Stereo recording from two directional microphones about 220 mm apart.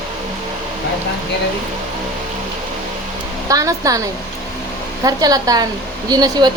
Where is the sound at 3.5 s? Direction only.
15° right (ahead or behind).